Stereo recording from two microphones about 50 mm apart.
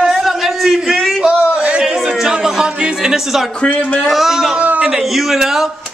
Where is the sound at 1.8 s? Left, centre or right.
Centre.